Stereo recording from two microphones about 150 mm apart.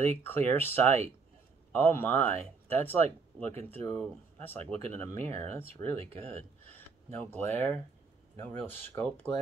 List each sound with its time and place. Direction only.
0.0 s speech: 15° left (ahead or behind)
7.2 s speech: 15° left (ahead or behind)